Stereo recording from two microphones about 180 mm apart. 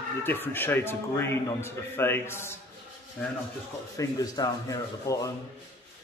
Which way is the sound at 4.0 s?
20° left (ahead or behind).